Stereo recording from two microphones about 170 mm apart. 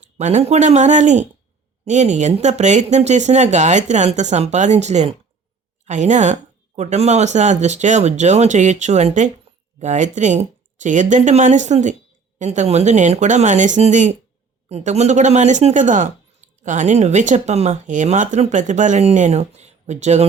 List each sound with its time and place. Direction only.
0.2 s speech: 40° right (ahead or behind)